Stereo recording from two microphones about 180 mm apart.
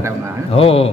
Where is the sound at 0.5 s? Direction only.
30° left (ahead or behind).